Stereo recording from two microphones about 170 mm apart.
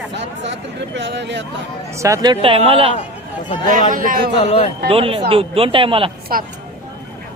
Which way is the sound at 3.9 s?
55° right (ahead or behind).